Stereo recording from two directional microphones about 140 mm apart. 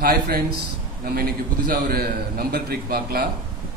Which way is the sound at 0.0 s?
90° right.